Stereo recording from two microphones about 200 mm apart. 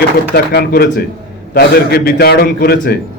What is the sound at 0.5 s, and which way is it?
A man's voice, 50° left (ahead or behind).